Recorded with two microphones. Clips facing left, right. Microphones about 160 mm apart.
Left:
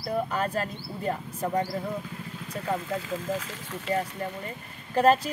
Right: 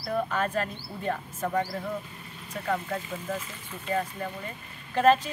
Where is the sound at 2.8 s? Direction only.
90° left.